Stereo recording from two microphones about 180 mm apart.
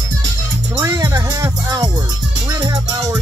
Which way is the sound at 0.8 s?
15° right (ahead or behind).